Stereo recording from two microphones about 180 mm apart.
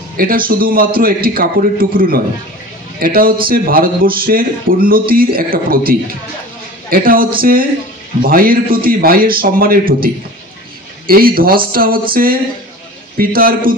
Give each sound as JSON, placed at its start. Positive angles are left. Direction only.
{"t": 0.2, "sound": "a man's voice", "side_deg": -55}